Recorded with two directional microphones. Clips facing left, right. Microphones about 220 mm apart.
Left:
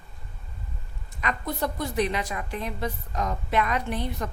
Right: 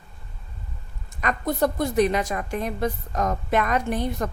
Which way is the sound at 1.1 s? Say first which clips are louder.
Right 6 dB; 45° right (ahead or behind).